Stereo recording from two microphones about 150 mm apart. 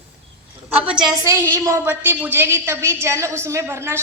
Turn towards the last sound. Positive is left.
turn(degrees=-15)  # may be behind; listen again after turning